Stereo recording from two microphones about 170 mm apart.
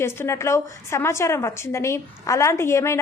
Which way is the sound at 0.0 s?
15° left (ahead or behind).